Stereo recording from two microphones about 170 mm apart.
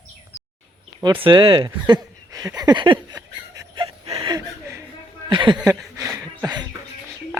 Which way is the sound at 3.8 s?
35° right (ahead or behind).